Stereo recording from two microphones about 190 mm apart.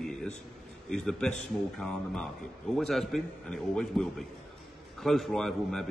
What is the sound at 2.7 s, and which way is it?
A man's voice, centre (ahead or behind).